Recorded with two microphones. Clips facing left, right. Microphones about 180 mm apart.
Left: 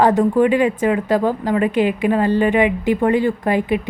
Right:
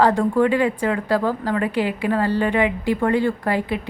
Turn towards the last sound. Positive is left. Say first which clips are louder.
# left 4 dB
turn(degrees=15)  # may be behind; listen again after turning